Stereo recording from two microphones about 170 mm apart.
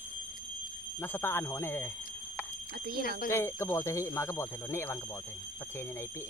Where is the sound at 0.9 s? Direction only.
15° left (ahead or behind).